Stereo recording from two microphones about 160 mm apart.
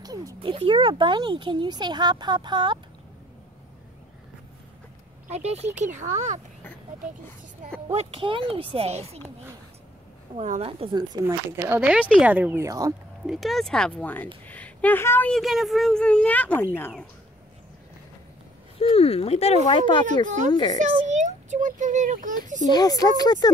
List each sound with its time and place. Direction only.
0.0 s a sound: 20° right (ahead or behind)
0.4 s speech: 35° right (ahead or behind)
5.3 s a child's voice: 40° right (ahead or behind)
7.9 s speech: 40° right (ahead or behind)
10.4 s a child's voice: 45° right (ahead or behind)
10.7 s speech: 30° right (ahead or behind)
11.5 s speech: 15° right (ahead or behind)
13.3 s a woman's voice: centre (ahead or behind)
18.8 s speech: 40° left (ahead or behind)
20.2 s a child's voice: 50° right (ahead or behind)
20.5 s speech: 25° left (ahead or behind)
21.1 s a child's voice: 50° right (ahead or behind)
22.6 s speech: 25° left (ahead or behind)